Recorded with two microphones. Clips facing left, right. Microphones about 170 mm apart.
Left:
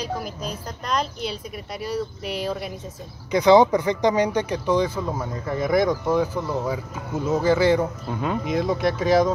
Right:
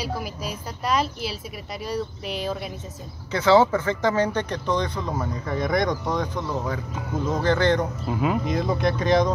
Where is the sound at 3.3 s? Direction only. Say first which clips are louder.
Left 3 dB; 15° left (ahead or behind).